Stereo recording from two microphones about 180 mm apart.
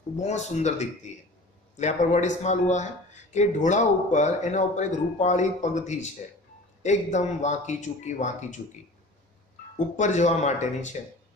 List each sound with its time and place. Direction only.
0.2 s speech: 40° left (ahead or behind)
9.7 s speech: 40° left (ahead or behind)